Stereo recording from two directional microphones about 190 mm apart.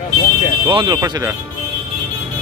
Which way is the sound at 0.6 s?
25° right (ahead or behind).